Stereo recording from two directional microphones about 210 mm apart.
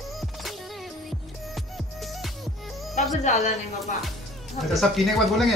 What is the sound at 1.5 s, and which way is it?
Music, centre (ahead or behind).